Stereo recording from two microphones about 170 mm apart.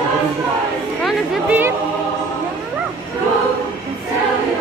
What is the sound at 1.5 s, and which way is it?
Music, 10° right (ahead or behind).